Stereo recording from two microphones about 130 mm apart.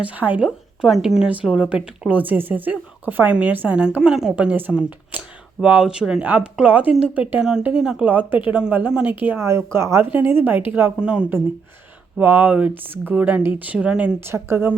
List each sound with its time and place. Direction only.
0.0 s a woman's voice: 10° right (ahead or behind)
14.3 s a woman's voice: 20° right (ahead or behind)